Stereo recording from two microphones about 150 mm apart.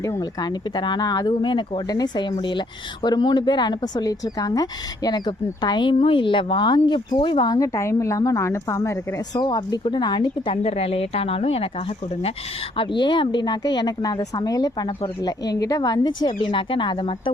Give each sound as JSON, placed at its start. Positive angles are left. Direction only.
{"t": 0.0, "sound": "speech", "side_deg": 25}
{"t": 12.7, "sound": "speech", "side_deg": 35}